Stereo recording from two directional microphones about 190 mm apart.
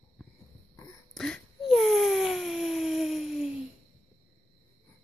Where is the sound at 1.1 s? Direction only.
Centre (ahead or behind).